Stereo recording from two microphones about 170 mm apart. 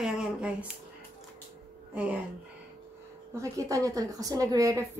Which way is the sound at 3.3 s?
20° right (ahead or behind).